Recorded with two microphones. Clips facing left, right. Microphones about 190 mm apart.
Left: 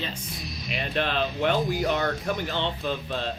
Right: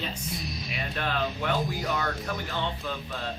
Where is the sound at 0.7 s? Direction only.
25° left (ahead or behind).